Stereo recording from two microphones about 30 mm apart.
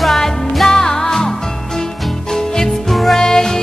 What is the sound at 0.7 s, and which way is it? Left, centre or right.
Music, centre.